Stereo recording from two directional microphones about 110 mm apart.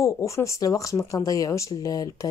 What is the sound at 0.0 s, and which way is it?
Speech, 25° left (ahead or behind).